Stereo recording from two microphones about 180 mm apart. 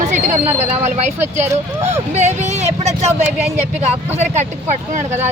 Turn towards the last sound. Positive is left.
turn(degrees=-40)  # may be behind; listen again after turning